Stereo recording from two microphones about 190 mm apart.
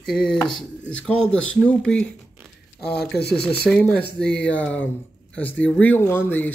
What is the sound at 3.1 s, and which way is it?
Speech, 60° left (ahead or behind).